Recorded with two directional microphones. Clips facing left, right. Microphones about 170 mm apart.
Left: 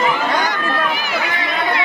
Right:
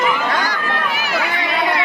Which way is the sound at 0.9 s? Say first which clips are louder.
Even; centre (ahead or behind).